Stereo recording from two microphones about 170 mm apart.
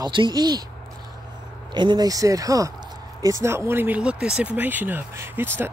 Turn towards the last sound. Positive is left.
turn(degrees=-10)  # may be behind; listen again after turning